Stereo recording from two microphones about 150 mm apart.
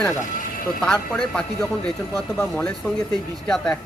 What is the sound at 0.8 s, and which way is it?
A man's voice, 5° left (ahead or behind).